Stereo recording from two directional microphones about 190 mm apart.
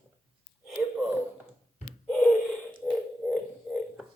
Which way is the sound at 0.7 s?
5° right (ahead or behind).